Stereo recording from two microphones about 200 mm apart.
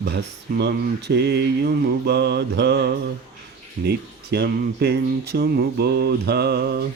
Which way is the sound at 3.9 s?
55° right (ahead or behind).